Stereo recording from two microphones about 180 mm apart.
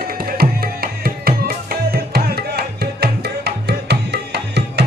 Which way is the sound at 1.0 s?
55° right (ahead or behind).